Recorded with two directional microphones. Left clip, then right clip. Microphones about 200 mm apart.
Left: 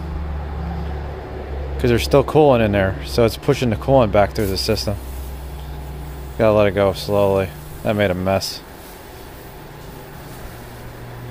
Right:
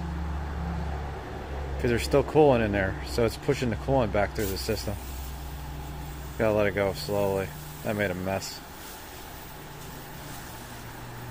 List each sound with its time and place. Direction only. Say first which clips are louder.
1.8 s speech: left 9 dB; 25° left (ahead or behind)
6.3 s speech: left 10 dB; 25° left (ahead or behind)